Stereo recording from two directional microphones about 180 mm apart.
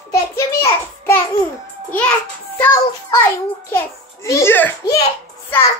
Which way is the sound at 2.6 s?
15° left (ahead or behind).